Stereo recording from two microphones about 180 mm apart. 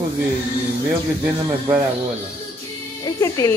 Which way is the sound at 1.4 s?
25° right (ahead or behind).